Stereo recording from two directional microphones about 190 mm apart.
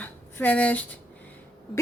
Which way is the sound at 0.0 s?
10° left (ahead or behind).